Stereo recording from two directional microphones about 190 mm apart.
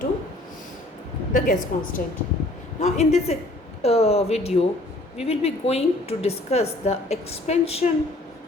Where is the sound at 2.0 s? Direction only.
45° left (ahead or behind).